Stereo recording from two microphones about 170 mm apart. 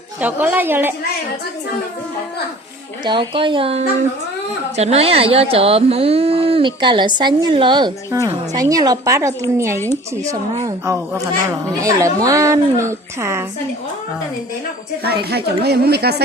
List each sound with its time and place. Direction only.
0.2 s a woman's voice: 10° right (ahead or behind)
3.0 s a woman's voice: 30° right (ahead or behind)
15.0 s a woman's voice: 70° right (ahead or behind)